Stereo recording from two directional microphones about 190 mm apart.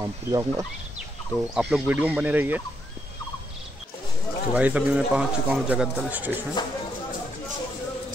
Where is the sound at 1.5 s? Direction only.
5° right (ahead or behind).